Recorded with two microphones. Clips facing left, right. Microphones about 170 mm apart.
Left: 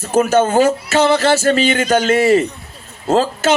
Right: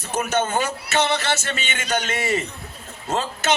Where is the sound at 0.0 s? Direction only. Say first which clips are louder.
Left 10 dB; 50° left (ahead or behind).